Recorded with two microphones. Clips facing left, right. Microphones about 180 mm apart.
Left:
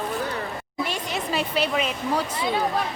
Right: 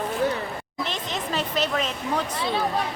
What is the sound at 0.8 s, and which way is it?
Speech, 10° left (ahead or behind).